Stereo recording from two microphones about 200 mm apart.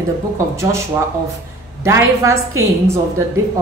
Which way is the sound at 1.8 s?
15° right (ahead or behind).